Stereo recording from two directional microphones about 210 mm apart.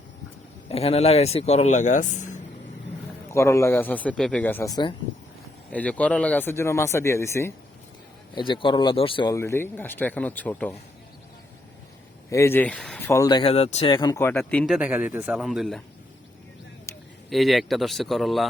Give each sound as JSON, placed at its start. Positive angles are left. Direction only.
{"t": 0.7, "sound": "speech", "side_deg": 30}
{"t": 3.3, "sound": "speech", "side_deg": 15}
{"t": 5.7, "sound": "speech", "side_deg": 5}
{"t": 8.4, "sound": "speech", "side_deg": 25}
{"t": 12.3, "sound": "speech", "side_deg": 15}
{"t": 14.8, "sound": "speech", "side_deg": -5}
{"t": 17.2, "sound": "speech", "side_deg": 0}